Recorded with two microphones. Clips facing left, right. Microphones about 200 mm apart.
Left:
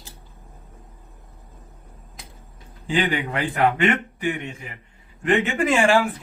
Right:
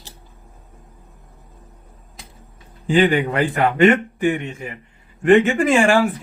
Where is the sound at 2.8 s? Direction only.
45° right (ahead or behind).